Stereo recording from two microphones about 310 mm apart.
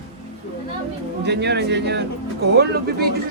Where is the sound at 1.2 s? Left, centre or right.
Right.